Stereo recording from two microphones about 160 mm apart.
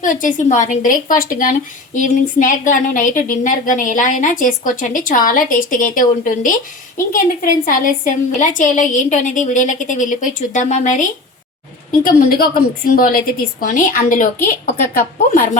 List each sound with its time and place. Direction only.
0.0 s a woman's voice: 55° left (ahead or behind)